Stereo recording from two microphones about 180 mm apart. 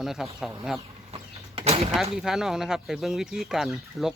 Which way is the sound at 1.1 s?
35° right (ahead or behind).